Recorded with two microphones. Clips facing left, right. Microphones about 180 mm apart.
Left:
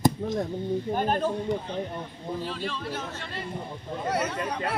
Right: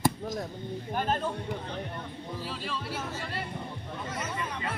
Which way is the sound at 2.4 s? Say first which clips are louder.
Left 2 dB; 5° right (ahead or behind).